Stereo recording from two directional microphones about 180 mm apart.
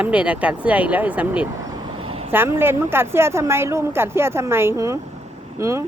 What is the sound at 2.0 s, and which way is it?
Vehicle, 30° right (ahead or behind).